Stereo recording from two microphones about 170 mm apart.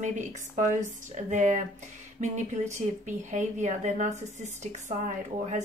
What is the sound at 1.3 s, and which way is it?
Speech, 45° right (ahead or behind).